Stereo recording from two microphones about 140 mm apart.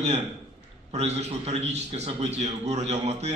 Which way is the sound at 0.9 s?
50° right (ahead or behind).